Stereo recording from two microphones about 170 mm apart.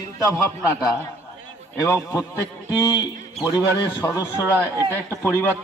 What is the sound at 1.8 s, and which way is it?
Speech, 15° left (ahead or behind).